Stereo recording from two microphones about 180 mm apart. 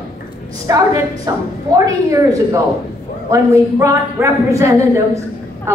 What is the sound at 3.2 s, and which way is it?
A woman's voice, 15° right (ahead or behind).